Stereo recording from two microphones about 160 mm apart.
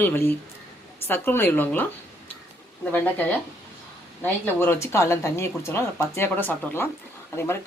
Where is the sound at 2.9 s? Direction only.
10° left (ahead or behind).